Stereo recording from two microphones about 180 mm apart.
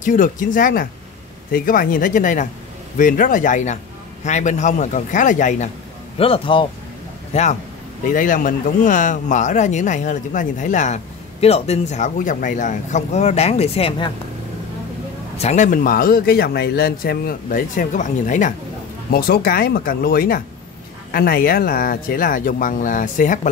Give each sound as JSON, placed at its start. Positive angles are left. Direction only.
{"t": 0.0, "sound": "a man's voice", "side_deg": 45}
{"t": 6.1, "sound": "speech", "side_deg": 30}
{"t": 8.1, "sound": "a man's voice", "side_deg": 50}
{"t": 15.3, "sound": "a man's voice", "side_deg": 40}
{"t": 19.0, "sound": "a man's voice", "side_deg": 55}